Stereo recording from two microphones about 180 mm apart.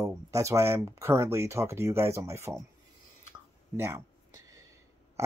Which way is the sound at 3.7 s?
15° right (ahead or behind).